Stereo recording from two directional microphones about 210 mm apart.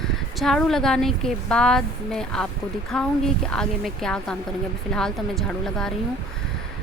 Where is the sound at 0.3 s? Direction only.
Centre (ahead or behind).